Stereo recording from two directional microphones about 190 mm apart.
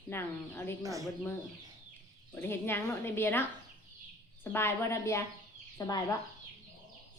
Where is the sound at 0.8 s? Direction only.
15° right (ahead or behind).